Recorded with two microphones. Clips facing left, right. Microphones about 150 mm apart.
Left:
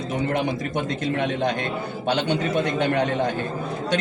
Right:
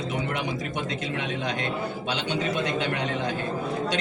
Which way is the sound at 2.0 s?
55° left (ahead or behind).